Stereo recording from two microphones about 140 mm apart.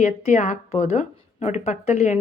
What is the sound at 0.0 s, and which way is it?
Speech, 60° left (ahead or behind).